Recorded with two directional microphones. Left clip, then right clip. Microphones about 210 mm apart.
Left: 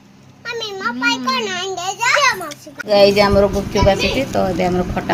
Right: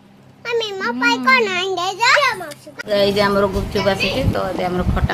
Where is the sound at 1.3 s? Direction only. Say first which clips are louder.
Right 4 dB; 30° right (ahead or behind).